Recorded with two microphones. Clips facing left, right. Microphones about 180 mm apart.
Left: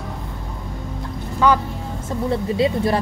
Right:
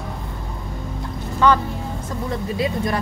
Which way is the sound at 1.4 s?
10° left (ahead or behind).